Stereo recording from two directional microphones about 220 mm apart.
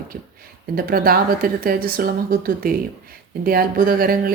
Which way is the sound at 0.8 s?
40° right (ahead or behind).